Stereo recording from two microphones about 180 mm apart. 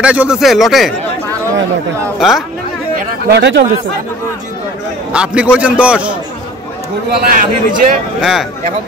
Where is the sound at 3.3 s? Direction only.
70° right (ahead or behind).